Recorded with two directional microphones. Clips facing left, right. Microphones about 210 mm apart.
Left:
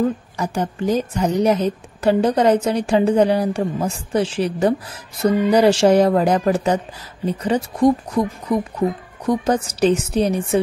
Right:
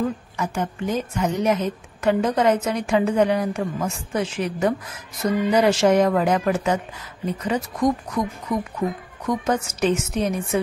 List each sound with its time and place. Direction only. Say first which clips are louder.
0.4 s a woman's voice: left 2 dB; 35° left (ahead or behind)